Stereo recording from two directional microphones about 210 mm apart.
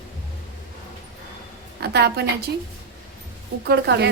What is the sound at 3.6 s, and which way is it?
Speech, 50° right (ahead or behind).